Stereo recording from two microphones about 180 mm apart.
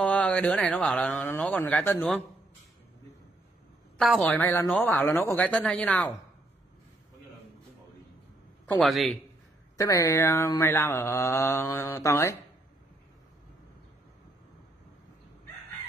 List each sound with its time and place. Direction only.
0.0 s mantra: 5° left (ahead or behind)
4.0 s mantra: 5° left (ahead or behind)
8.6 s a man's voice: centre (ahead or behind)
9.8 s mantra: 20° left (ahead or behind)